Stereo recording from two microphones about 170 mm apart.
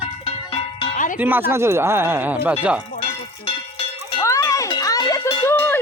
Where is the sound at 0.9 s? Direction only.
50° left (ahead or behind).